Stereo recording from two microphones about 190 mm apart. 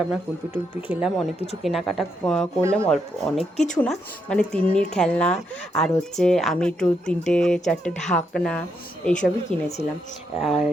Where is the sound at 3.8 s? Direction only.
5° left (ahead or behind).